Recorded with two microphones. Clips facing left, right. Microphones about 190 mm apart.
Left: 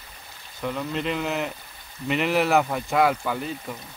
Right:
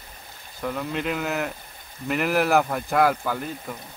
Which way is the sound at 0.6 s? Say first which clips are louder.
Even; centre (ahead or behind).